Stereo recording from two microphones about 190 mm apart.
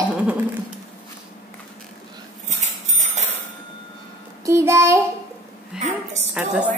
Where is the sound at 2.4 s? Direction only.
35° right (ahead or behind).